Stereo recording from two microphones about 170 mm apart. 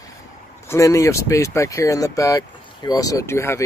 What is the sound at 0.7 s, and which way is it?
Speech, 20° left (ahead or behind).